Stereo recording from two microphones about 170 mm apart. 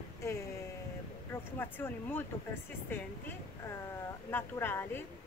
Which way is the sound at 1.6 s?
10° left (ahead or behind).